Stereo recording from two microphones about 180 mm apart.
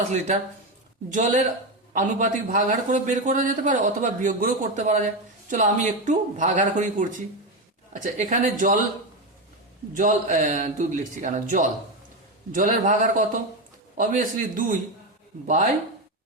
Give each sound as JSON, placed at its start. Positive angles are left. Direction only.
{"t": 1.1, "sound": "a man's voice", "side_deg": -40}
{"t": 9.9, "sound": "a man's voice", "side_deg": -45}